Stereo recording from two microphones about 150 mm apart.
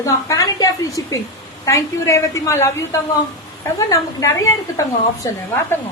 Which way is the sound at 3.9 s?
20° left (ahead or behind).